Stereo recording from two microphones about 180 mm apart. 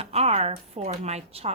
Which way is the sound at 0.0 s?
35° right (ahead or behind).